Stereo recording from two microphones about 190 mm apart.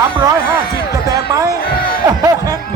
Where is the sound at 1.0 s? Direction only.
20° right (ahead or behind).